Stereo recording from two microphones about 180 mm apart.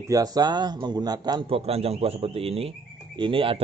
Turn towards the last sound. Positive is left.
turn(degrees=-30)  # may be behind; listen again after turning